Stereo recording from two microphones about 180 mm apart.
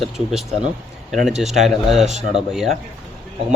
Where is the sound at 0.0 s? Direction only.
Centre (ahead or behind).